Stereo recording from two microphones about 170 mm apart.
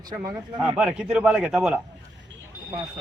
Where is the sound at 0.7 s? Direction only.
5° right (ahead or behind).